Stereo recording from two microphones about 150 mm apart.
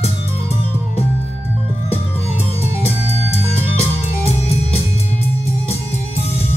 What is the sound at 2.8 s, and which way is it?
Music, 45° left (ahead or behind).